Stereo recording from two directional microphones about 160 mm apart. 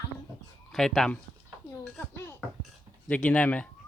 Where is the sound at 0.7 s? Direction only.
Centre (ahead or behind).